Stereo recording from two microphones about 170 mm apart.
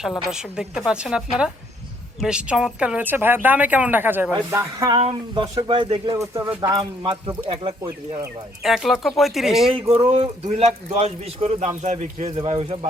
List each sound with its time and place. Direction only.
0.3 s a woman's voice: 5° right (ahead or behind)
4.9 s speech: 35° right (ahead or behind); by 6.6 s 15° right (ahead or behind)
6.6 s speech: 25° right (ahead or behind)
8.6 s a woman's voice: centre (ahead or behind)
9.9 s speech: 35° right (ahead or behind)
12.4 s speech: 30° right (ahead or behind)